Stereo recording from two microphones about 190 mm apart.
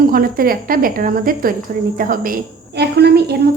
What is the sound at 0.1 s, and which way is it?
A woman's voice, 50° right (ahead or behind).